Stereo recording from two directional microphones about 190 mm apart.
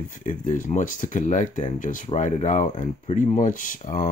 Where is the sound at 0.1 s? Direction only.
40° left (ahead or behind).